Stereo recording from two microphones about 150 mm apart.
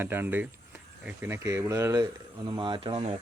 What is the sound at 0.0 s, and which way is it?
Speech, 15° right (ahead or behind).